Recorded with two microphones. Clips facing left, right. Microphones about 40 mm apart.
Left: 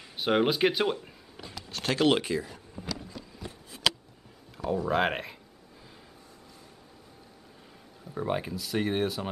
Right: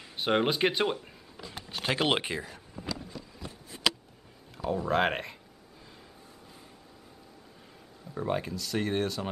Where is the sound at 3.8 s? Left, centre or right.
Centre.